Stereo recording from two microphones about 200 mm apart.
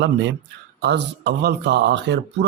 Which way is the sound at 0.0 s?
60° right (ahead or behind).